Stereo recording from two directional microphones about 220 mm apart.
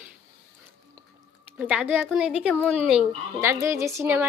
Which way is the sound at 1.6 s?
5° right (ahead or behind).